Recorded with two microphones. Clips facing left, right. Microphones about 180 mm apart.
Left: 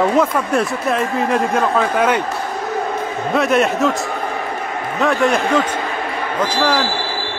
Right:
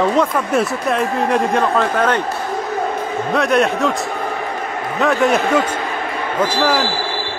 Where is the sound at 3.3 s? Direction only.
Centre (ahead or behind).